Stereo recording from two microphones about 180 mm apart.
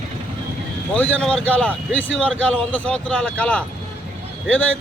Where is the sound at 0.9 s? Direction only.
10° left (ahead or behind).